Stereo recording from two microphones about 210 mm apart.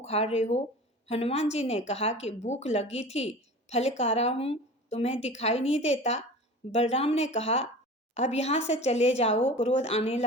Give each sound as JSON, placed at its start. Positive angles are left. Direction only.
{"t": 0.0, "sound": "a woman's voice", "side_deg": 30}